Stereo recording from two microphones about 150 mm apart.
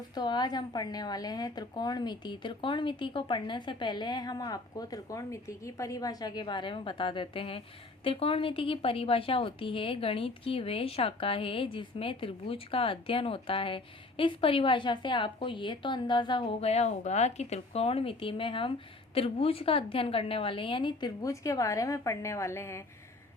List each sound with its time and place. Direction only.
0.1 s a woman's voice: 30° left (ahead or behind)